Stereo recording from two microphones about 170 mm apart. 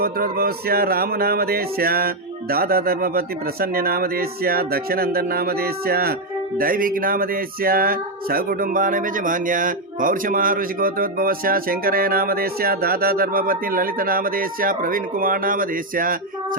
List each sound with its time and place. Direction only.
0.0 s speech: 60° right (ahead or behind)